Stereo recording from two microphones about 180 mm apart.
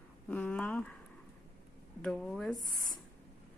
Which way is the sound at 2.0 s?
5° left (ahead or behind).